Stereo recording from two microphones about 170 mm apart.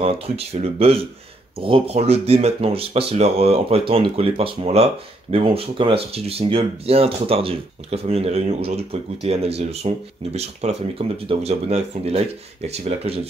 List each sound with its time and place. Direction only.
0.0 s speech: 35° right (ahead or behind)